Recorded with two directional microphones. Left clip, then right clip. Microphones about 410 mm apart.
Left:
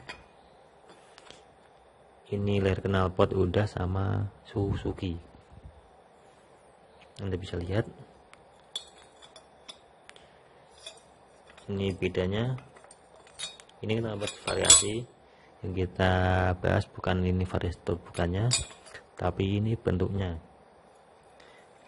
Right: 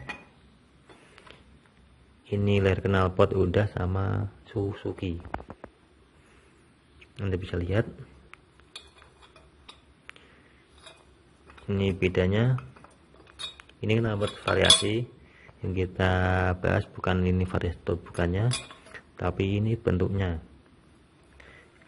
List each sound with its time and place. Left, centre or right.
1.1 s a sound: centre
2.2 s speech: centre
7.2 s a man's voice: centre
11.6 s speech: centre
13.6 s speech: centre